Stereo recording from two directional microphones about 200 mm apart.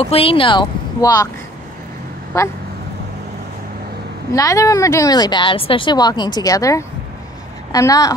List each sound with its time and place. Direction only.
0.0 s speech: 30° left (ahead or behind)
2.3 s speech: 15° left (ahead or behind)
4.3 s speech: 15° left (ahead or behind)